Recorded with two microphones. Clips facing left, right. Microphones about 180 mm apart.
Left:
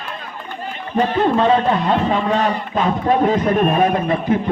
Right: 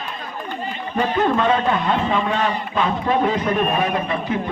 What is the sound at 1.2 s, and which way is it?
A man's voice, 30° left (ahead or behind).